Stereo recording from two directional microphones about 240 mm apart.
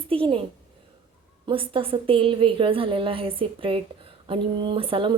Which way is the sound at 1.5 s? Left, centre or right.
Right.